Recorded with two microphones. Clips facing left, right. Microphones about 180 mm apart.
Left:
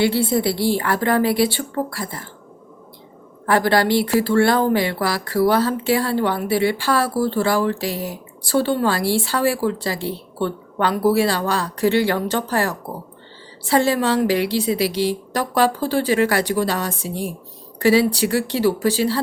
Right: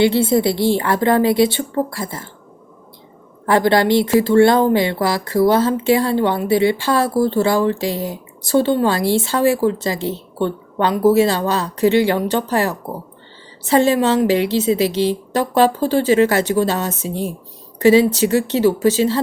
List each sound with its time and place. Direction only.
0.0 s speech: 25° right (ahead or behind)
3.4 s speech: 20° right (ahead or behind)